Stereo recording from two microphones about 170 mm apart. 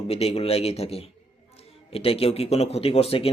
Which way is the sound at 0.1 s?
35° left (ahead or behind).